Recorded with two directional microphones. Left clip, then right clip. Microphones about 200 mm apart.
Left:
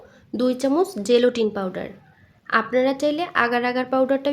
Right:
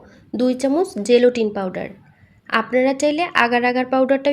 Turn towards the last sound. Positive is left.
turn(degrees=-10)  # may be behind; listen again after turning